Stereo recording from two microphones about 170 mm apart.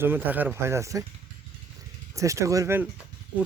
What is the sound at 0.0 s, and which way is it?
Speech, 10° right (ahead or behind).